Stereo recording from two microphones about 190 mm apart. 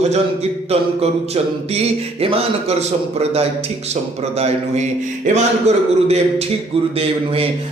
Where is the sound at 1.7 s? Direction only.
30° right (ahead or behind).